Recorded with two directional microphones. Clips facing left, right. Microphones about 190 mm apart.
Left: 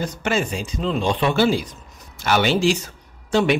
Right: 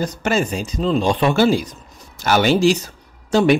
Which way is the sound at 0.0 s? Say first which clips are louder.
Right 3 dB; 40° right (ahead or behind).